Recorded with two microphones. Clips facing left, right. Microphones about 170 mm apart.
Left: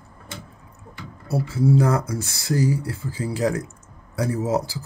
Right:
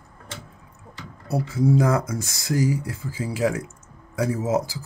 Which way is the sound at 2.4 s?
15° right (ahead or behind).